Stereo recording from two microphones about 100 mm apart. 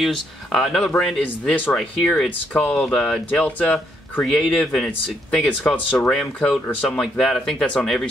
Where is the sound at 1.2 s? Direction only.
15° left (ahead or behind).